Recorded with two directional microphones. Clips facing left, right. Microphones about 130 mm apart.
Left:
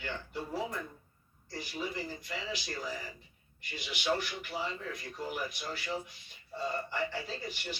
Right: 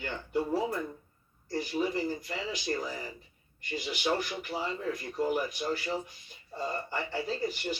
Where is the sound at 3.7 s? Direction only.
40° right (ahead or behind).